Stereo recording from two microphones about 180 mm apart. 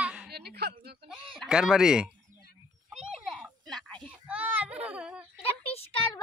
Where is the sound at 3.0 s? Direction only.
5° right (ahead or behind).